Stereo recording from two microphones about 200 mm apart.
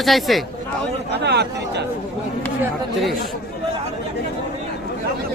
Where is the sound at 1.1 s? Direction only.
55° right (ahead or behind).